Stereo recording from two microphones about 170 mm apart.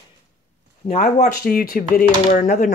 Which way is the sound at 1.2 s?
65° left (ahead or behind).